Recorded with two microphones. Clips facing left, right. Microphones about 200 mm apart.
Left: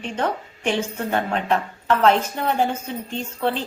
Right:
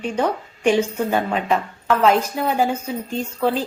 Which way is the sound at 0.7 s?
15° right (ahead or behind).